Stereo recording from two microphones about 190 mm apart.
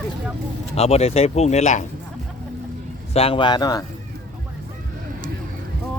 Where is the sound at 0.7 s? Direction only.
35° left (ahead or behind).